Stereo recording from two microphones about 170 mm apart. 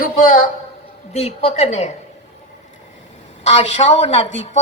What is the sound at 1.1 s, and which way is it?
Speech, 35° left (ahead or behind).